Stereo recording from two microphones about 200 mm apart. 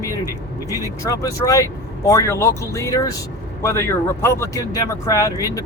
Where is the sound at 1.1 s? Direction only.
15° left (ahead or behind).